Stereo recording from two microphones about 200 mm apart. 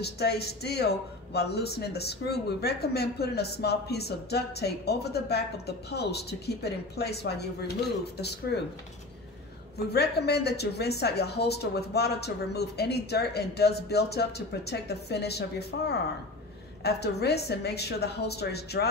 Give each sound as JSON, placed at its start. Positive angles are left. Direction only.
{"t": 0.0, "sound": "speech", "side_deg": 55}
{"t": 9.9, "sound": "a woman's voice", "side_deg": 55}